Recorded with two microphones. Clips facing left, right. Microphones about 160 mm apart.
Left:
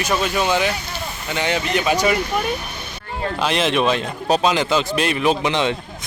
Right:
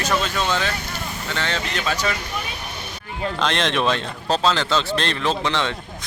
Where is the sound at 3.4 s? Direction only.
5° left (ahead or behind).